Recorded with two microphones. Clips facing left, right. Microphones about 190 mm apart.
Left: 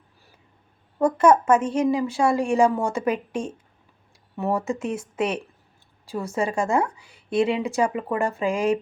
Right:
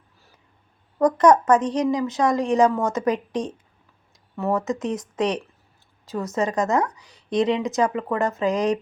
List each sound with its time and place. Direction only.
0.9 s speech: 10° left (ahead or behind)
4.4 s a woman's voice: 15° left (ahead or behind)
6.8 s speech: 40° right (ahead or behind)
7.3 s speech: 10° left (ahead or behind)